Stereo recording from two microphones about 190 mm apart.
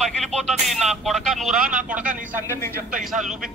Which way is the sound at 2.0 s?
45° right (ahead or behind).